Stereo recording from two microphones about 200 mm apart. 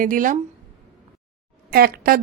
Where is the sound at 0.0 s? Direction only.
45° right (ahead or behind).